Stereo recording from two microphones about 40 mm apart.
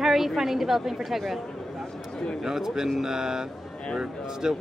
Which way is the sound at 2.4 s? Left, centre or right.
Centre.